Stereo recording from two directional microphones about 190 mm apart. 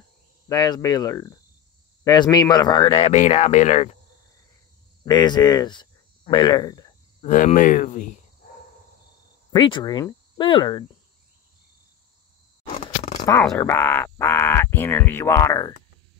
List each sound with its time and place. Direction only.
0.5 s speech: 20° left (ahead or behind); by 3.9 s 35° left (ahead or behind)
5.0 s speech: 20° left (ahead or behind)
7.2 s speech: 40° left (ahead or behind)
8.4 s a sound: 55° left (ahead or behind)
9.5 s cricket: 25° left (ahead or behind)
12.7 s a sound: 30° left (ahead or behind)
13.4 s speech: 5° left (ahead or behind)